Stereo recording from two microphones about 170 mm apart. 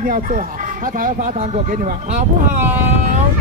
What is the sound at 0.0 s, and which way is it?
Speech, 50° right (ahead or behind).